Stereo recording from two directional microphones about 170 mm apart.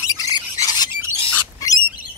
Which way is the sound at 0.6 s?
25° left (ahead or behind).